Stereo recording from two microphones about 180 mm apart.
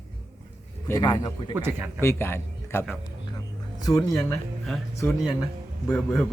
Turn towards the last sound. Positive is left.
turn(degrees=15)  # may be behind; listen again after turning